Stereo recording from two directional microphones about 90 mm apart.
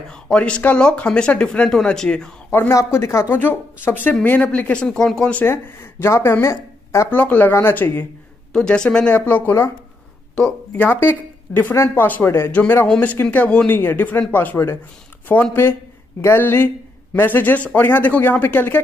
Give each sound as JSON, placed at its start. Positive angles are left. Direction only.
{"t": 0.1, "sound": "speech", "side_deg": 10}
{"t": 2.7, "sound": "speech", "side_deg": 35}
{"t": 5.3, "sound": "speech", "side_deg": 25}
{"t": 7.1, "sound": "speech", "side_deg": 20}
{"t": 8.5, "sound": "speech", "side_deg": 10}
{"t": 10.9, "sound": "speech", "side_deg": 25}
{"t": 12.8, "sound": "speech", "side_deg": 15}